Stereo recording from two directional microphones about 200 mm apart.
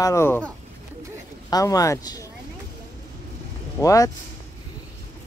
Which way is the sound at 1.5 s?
15° left (ahead or behind).